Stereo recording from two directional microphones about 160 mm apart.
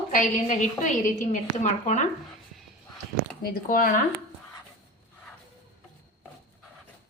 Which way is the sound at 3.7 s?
60° left (ahead or behind).